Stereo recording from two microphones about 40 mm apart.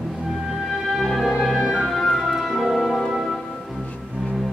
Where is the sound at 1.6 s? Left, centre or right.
Right.